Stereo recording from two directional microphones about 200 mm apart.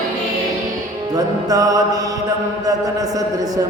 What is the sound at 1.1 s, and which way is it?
Mantra, 20° right (ahead or behind).